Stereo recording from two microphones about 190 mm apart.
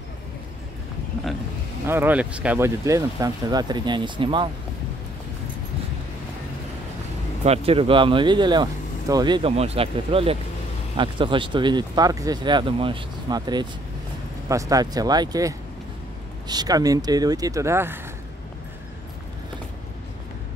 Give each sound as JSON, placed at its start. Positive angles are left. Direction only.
{"t": 1.9, "sound": "speech", "side_deg": -10}
{"t": 7.4, "sound": "speech", "side_deg": -30}